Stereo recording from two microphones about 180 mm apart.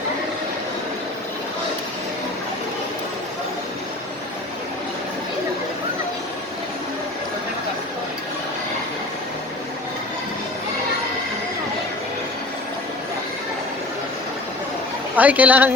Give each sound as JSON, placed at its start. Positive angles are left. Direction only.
{"t": 15.1, "sound": "speech", "side_deg": -10}